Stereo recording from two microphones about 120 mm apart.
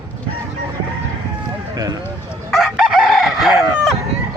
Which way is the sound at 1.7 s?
30° right (ahead or behind).